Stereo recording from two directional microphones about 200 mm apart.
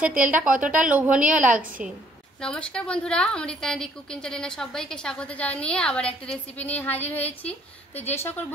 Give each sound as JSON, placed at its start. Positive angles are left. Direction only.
{"t": 0.1, "sound": "speech", "side_deg": -40}
{"t": 0.8, "sound": "a woman's voice", "side_deg": -5}